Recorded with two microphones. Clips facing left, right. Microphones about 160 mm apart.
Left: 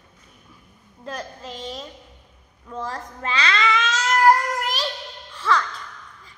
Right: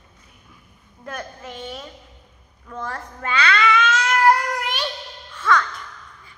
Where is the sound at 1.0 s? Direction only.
35° left (ahead or behind).